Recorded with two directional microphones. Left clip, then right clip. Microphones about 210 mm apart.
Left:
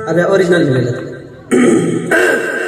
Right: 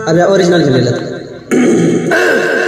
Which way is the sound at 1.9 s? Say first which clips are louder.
Right 1 dB; 60° right (ahead or behind).